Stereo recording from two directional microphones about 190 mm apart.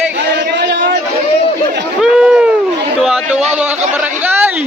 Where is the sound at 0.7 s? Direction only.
70° right (ahead or behind).